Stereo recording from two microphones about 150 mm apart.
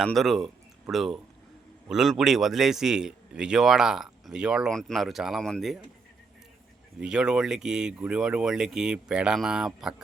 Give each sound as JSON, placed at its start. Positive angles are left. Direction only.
{"t": 0.0, "sound": "a man's voice", "side_deg": 0}
{"t": 7.0, "sound": "a man's voice", "side_deg": -5}